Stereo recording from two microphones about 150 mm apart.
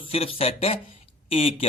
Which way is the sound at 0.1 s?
40° left (ahead or behind).